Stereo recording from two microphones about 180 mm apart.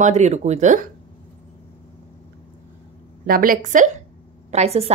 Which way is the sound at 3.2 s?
55° right (ahead or behind).